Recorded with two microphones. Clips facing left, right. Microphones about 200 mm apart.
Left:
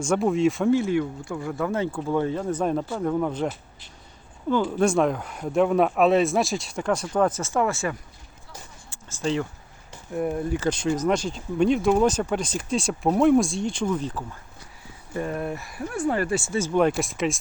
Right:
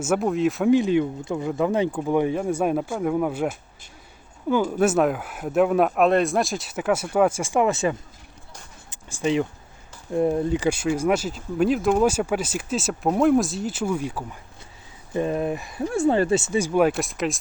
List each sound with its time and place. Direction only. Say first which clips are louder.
0.0 s speech: even; 5° right (ahead or behind)
0.7 s speech: right 3 dB; 20° right (ahead or behind)
8.9 s a sound: right 3 dB; 15° right (ahead or behind)
10.2 s speech: right 4 dB; 25° right (ahead or behind)
10.7 s speech: even; 10° right (ahead or behind)